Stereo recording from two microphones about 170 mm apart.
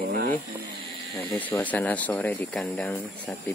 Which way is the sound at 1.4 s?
10° left (ahead or behind).